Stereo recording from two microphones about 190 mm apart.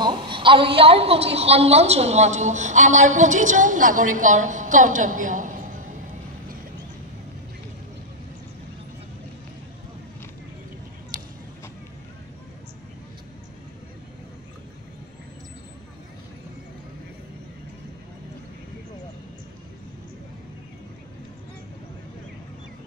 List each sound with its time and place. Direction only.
0.0 s a woman's voice: 25° right (ahead or behind); by 5.8 s 40° right (ahead or behind)